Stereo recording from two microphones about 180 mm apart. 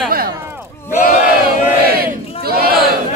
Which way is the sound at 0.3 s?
10° right (ahead or behind).